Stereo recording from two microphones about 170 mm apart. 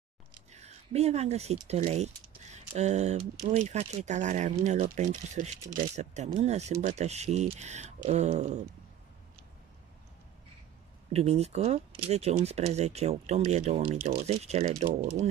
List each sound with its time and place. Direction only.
0.5 s speech: 40° right (ahead or behind)
11.1 s speech: 40° right (ahead or behind)